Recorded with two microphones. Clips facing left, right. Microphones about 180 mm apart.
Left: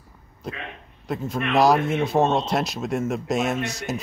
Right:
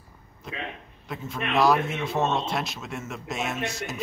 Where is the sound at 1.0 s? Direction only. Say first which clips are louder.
Left 6 dB; 40° left (ahead or behind).